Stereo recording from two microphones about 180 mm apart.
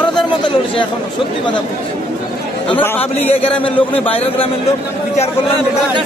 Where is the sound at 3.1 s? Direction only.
35° left (ahead or behind).